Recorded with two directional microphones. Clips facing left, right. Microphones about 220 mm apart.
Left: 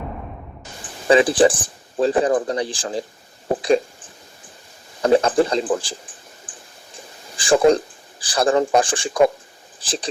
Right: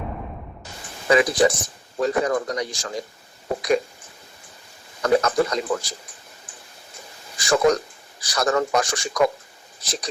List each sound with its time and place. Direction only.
0.8 s speech: 30° left (ahead or behind)
5.0 s a sound: 30° left (ahead or behind)
8.2 s a man's voice: 30° left (ahead or behind)